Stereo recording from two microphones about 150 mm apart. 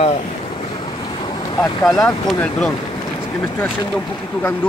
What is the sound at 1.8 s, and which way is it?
Speech, centre (ahead or behind).